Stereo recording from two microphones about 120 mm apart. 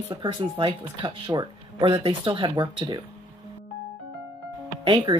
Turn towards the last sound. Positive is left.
turn(degrees=-40)  # may be behind; listen again after turning